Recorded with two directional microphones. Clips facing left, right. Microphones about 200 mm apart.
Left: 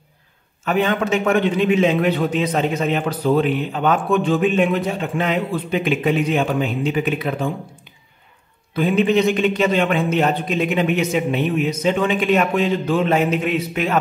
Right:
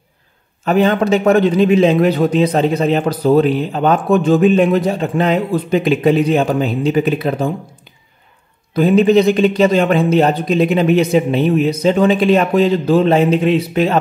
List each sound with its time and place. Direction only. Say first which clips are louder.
0.7 s a man's voice: right 6 dB; 35° right (ahead or behind)
8.7 s a man's voice: right 6 dB; 40° right (ahead or behind)